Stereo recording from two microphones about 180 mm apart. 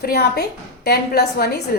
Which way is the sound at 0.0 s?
60° left (ahead or behind).